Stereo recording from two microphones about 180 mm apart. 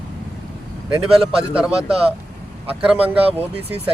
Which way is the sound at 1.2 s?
30° right (ahead or behind).